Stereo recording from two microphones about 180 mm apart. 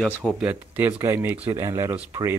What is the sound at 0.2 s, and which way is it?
Speech, 5° right (ahead or behind).